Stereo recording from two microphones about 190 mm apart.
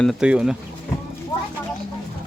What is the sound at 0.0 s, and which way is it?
Speech, centre (ahead or behind).